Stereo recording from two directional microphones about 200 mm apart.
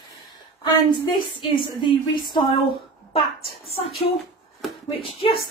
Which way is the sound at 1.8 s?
20° left (ahead or behind).